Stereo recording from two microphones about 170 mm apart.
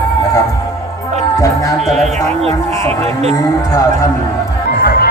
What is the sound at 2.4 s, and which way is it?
Speech, 35° right (ahead or behind).